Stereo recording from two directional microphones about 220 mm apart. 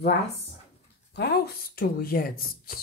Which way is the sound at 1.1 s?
50° left (ahead or behind).